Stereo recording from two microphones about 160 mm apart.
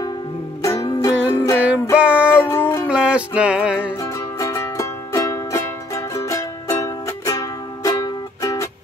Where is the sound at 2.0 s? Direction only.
10° right (ahead or behind).